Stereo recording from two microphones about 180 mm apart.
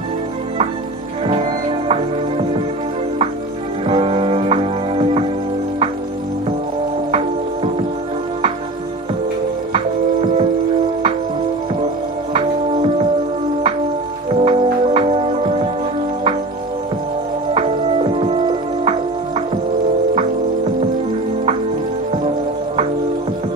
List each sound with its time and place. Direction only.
1.2 s music: 35° right (ahead or behind)
3.8 s music: 35° right (ahead or behind)
7.1 s music: 35° right (ahead or behind)
12.4 s music: 35° right (ahead or behind)
14.3 s organ: 30° right (ahead or behind)
17.6 s music: 30° right (ahead or behind)